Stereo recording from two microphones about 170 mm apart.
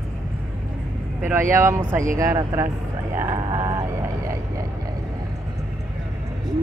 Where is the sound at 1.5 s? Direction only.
15° right (ahead or behind).